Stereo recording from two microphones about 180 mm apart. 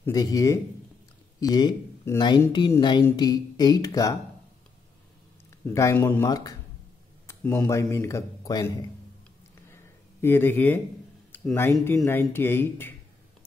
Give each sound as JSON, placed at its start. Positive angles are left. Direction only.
{"t": 0.0, "sound": "speech", "side_deg": 20}
{"t": 5.7, "sound": "speech", "side_deg": 15}
{"t": 10.2, "sound": "speech", "side_deg": 10}